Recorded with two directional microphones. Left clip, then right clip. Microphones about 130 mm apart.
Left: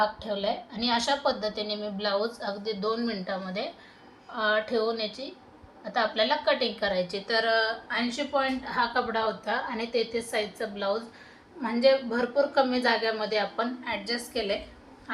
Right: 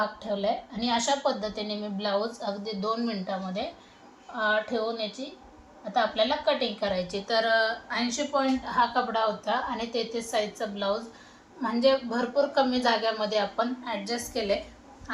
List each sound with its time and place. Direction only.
0.0 s a woman's voice: 10° left (ahead or behind)
2.8 s a woman's voice: 30° left (ahead or behind)
8.3 s a woman's voice: 30° left (ahead or behind)